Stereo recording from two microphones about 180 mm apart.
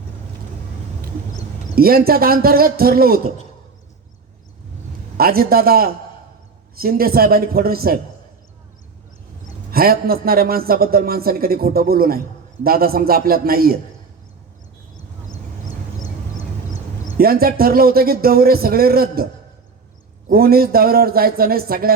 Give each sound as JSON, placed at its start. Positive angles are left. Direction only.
{"t": 1.7, "sound": "a man's voice", "side_deg": -55}
{"t": 5.1, "sound": "a man's voice", "side_deg": -55}
{"t": 9.7, "sound": "a man's voice", "side_deg": -55}
{"t": 17.2, "sound": "a man's voice", "side_deg": -55}